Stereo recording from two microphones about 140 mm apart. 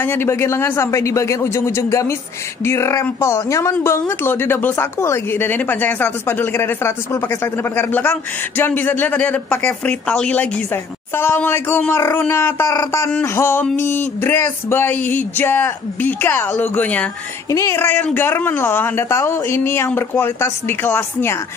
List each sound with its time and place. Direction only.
0.0 s a woman's voice: 15° left (ahead or behind)
17.5 s a woman's voice: 20° left (ahead or behind)